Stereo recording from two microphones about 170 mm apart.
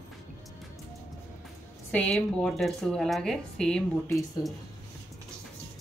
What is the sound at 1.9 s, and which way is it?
A woman's voice, 5° left (ahead or behind).